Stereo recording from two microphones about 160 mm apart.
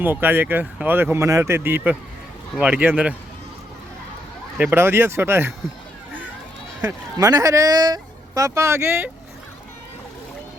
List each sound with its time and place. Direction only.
0.0 s speech: 10° right (ahead or behind)
4.5 s speech: 10° right (ahead or behind)
7.2 s speech: 25° right (ahead or behind)